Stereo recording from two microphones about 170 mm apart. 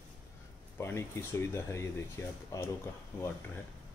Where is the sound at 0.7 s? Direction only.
15° left (ahead or behind).